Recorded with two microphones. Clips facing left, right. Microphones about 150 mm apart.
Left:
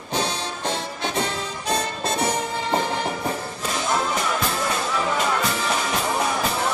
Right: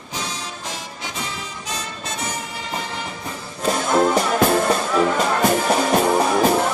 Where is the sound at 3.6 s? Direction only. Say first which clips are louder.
Right 7 dB; 55° right (ahead or behind).